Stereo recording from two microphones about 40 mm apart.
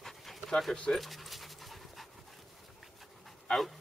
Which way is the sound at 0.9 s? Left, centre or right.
Centre.